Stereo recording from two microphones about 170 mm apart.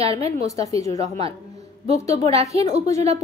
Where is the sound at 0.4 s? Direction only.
20° left (ahead or behind).